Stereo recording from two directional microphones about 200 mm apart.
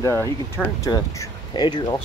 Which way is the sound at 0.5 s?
15° left (ahead or behind).